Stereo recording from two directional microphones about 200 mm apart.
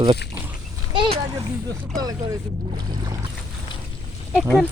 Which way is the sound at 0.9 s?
25° right (ahead or behind).